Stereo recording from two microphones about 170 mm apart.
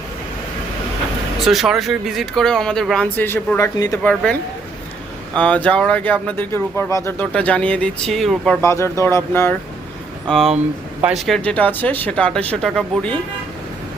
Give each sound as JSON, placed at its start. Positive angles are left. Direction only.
{"t": 1.4, "sound": "speech", "side_deg": 0}
{"t": 4.0, "sound": "speech", "side_deg": 5}
{"t": 8.6, "sound": "speech", "side_deg": 15}
{"t": 10.2, "sound": "speech", "side_deg": 0}